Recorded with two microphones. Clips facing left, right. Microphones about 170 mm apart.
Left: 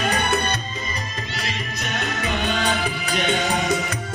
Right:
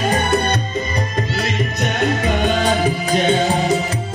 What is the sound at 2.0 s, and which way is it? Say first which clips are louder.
Music: right 7 dB; 45° right (ahead or behind).